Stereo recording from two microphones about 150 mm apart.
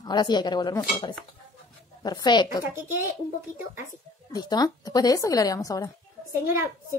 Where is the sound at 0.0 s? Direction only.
30° left (ahead or behind).